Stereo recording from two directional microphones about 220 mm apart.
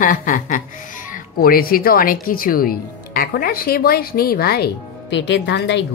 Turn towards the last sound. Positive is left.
turn(degrees=50)  # may be behind; listen again after turning